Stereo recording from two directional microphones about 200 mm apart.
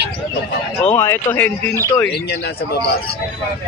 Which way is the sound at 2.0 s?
55° left (ahead or behind).